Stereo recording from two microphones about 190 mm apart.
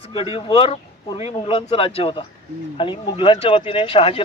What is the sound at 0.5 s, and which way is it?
A man's voice, 30° left (ahead or behind).